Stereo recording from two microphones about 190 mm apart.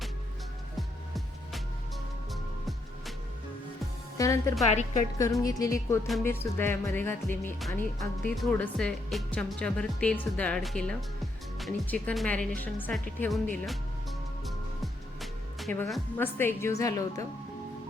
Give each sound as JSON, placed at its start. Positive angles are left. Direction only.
{"t": 0.8, "sound": "music", "side_deg": 0}
{"t": 4.2, "sound": "music", "side_deg": 15}
{"t": 8.4, "sound": "speech", "side_deg": 5}
{"t": 15.2, "sound": "a woman's voice", "side_deg": 0}